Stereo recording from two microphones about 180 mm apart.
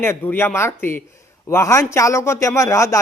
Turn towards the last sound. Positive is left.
turn(degrees=15)  # may be behind; listen again after turning